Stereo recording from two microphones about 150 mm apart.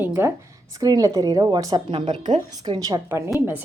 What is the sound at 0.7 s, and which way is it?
A woman's voice, 25° right (ahead or behind).